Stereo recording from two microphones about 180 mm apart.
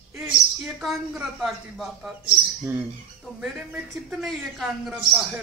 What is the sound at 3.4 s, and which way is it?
Speech, 5° right (ahead or behind).